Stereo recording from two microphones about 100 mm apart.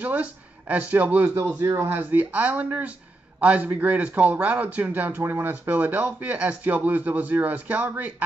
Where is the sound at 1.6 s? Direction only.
30° right (ahead or behind).